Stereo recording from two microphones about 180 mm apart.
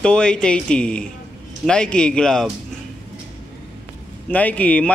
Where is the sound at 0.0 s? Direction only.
5° left (ahead or behind).